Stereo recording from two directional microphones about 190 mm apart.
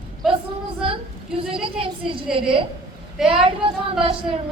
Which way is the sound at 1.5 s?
30° right (ahead or behind).